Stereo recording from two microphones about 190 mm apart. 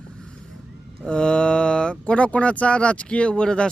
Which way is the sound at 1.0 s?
5° left (ahead or behind).